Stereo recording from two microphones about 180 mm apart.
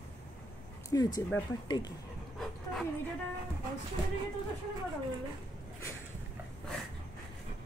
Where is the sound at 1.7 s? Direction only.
25° left (ahead or behind).